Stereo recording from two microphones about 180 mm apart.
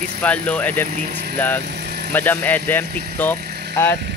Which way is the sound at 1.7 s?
65° right (ahead or behind).